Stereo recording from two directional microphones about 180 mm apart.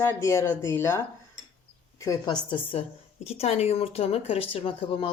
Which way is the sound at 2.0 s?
20° left (ahead or behind).